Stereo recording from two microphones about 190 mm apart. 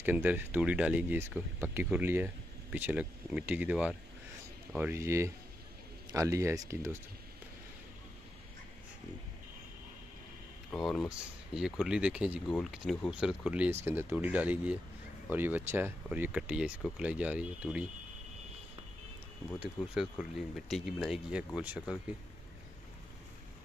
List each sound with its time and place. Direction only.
0.0 s speech: 10° right (ahead or behind)
10.7 s speech: 5° left (ahead or behind)
19.6 s speech: 5° right (ahead or behind)